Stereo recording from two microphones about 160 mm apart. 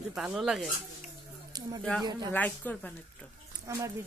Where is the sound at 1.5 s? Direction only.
25° right (ahead or behind).